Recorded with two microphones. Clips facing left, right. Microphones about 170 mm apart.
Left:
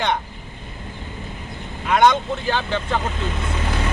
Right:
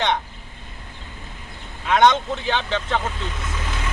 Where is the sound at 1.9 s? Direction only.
5° left (ahead or behind).